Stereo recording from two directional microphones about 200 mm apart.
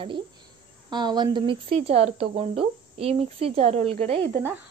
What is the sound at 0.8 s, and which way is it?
Speech, 20° right (ahead or behind).